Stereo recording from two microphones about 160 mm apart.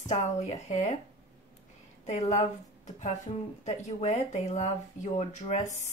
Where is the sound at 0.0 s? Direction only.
45° left (ahead or behind).